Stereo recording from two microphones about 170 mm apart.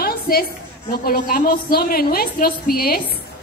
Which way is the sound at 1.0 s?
60° left (ahead or behind).